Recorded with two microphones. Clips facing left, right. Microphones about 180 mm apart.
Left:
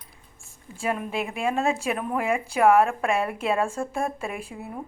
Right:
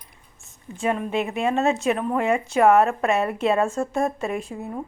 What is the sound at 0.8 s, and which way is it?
Speech, 5° left (ahead or behind).